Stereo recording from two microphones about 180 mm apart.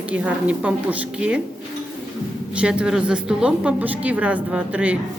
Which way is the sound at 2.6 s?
5° right (ahead or behind).